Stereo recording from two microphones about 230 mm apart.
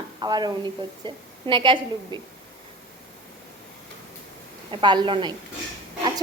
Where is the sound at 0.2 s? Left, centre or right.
Centre.